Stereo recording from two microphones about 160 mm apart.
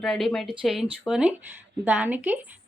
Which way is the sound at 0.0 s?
Centre (ahead or behind).